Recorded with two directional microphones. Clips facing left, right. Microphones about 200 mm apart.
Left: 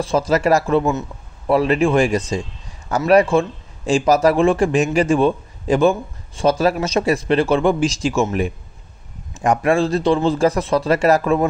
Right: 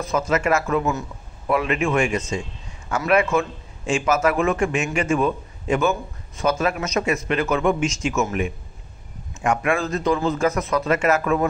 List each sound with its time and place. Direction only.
0.0 s a man's voice: 30° left (ahead or behind)